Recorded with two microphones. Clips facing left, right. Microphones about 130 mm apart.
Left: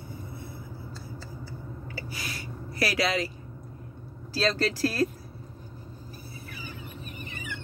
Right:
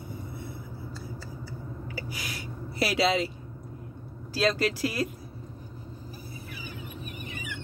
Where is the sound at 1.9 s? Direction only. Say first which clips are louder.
Even; 10° right (ahead or behind).